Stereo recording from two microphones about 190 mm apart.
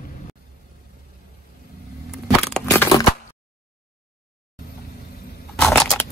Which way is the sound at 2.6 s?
15° left (ahead or behind).